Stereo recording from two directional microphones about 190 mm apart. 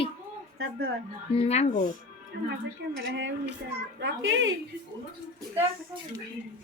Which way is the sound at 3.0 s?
80° right.